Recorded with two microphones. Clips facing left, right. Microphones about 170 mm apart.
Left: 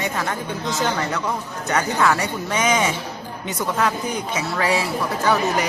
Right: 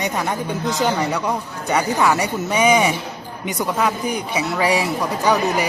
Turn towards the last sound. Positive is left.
turn(degrees=-15)  # may be behind; listen again after turning